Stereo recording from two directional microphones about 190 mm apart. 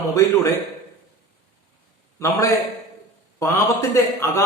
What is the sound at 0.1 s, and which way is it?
Speech, 15° left (ahead or behind).